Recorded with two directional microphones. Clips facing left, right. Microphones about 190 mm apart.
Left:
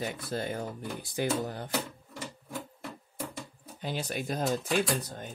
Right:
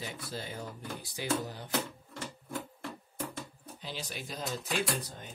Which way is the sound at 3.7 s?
50° left (ahead or behind).